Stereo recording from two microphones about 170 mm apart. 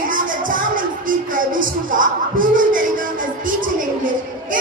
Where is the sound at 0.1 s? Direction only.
50° right (ahead or behind).